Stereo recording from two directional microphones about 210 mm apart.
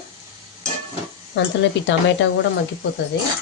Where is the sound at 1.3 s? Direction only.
60° left (ahead or behind).